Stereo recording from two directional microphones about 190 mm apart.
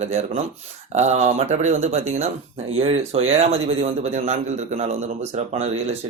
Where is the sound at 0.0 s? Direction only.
35° right (ahead or behind).